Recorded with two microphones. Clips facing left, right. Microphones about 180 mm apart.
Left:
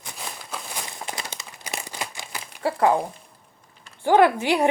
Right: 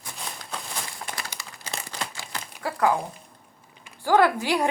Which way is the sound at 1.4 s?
15° left (ahead or behind).